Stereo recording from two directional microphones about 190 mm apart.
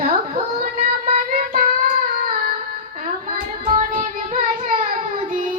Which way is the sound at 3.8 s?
40° right (ahead or behind).